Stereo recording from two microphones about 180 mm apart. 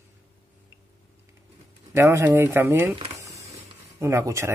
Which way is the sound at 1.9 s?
15° right (ahead or behind).